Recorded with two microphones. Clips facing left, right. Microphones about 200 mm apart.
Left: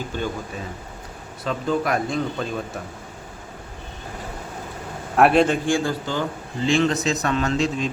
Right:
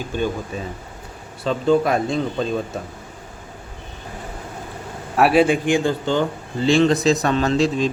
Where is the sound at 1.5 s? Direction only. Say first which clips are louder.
Right 5 dB; 25° right (ahead or behind).